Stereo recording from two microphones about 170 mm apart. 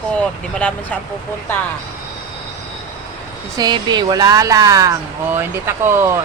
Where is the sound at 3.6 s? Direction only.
25° right (ahead or behind).